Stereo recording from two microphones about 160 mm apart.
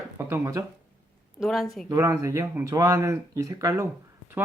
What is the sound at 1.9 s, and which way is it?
Speech, 20° right (ahead or behind).